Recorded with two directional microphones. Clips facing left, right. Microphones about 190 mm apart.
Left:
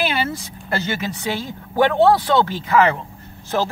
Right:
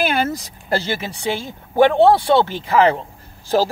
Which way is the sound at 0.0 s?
45° right (ahead or behind).